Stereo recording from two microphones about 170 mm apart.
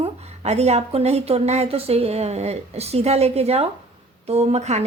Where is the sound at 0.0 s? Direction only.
40° right (ahead or behind).